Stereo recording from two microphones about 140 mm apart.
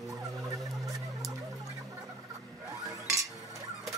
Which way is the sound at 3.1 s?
25° right (ahead or behind).